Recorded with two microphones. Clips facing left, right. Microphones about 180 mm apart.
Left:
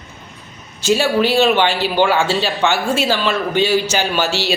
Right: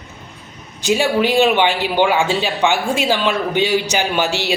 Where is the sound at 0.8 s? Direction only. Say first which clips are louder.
Left 1 dB; 15° right (ahead or behind).